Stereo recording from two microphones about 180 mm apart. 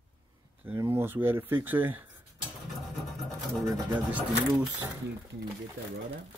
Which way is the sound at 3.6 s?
15° right (ahead or behind).